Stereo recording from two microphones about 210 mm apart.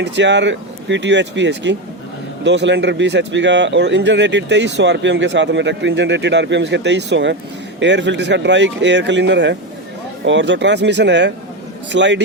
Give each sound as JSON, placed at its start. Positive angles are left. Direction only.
{"t": 0.0, "sound": "speech", "side_deg": -55}